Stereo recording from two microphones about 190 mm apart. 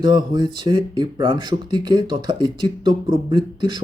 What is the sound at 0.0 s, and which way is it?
Speech, 25° right (ahead or behind).